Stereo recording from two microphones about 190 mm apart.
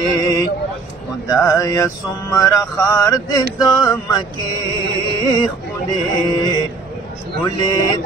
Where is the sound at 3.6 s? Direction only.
20° left (ahead or behind).